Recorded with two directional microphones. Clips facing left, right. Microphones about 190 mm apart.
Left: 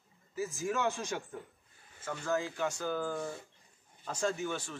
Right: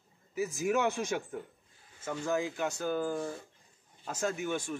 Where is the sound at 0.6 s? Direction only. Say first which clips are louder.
Right 4 dB; 10° right (ahead or behind).